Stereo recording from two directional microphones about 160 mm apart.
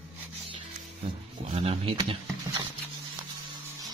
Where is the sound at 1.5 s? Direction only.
40° right (ahead or behind).